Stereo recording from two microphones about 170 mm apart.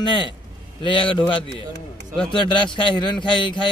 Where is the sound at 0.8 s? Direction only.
30° left (ahead or behind).